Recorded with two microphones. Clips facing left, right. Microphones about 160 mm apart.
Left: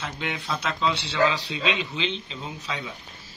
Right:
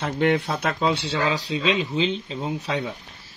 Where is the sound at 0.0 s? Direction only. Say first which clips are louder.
Right 11 dB; 55° right (ahead or behind).